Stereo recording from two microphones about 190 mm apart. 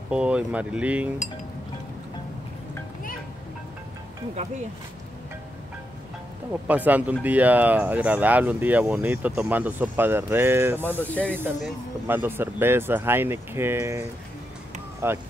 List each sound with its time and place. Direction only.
0.1 s speech: 5° right (ahead or behind)
6.5 s speech: 10° right (ahead or behind)
10.8 s speech: 10° left (ahead or behind)
11.6 s speech: 10° right (ahead or behind)